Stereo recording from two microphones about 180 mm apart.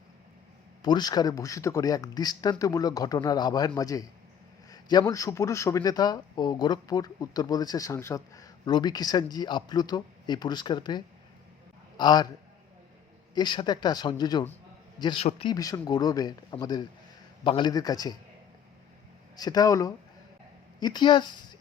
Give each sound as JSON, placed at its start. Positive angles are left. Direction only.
{"t": 0.8, "sound": "a man's voice", "side_deg": 25}
{"t": 13.3, "sound": "a man's voice", "side_deg": 25}
{"t": 15.5, "sound": "a man's voice", "side_deg": 20}
{"t": 19.4, "sound": "a man's voice", "side_deg": 20}